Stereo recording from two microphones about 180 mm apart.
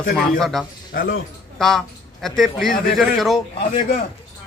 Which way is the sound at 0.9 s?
60° left (ahead or behind).